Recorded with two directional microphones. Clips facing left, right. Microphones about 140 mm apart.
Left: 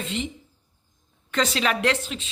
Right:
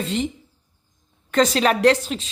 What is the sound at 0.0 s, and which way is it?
Speech, 35° right (ahead or behind).